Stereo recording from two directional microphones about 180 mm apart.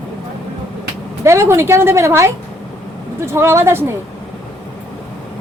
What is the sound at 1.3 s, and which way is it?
Speech, 15° right (ahead or behind).